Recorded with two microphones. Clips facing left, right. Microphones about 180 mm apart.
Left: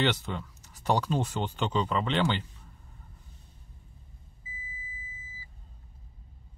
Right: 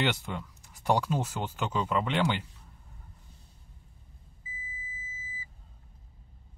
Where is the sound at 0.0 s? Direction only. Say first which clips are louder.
Left 2 dB; 10° right (ahead or behind).